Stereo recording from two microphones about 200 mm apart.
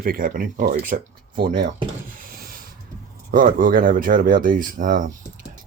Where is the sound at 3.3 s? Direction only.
45° right (ahead or behind).